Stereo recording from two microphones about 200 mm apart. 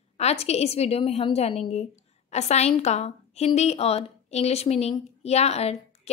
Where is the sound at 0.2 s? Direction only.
30° left (ahead or behind).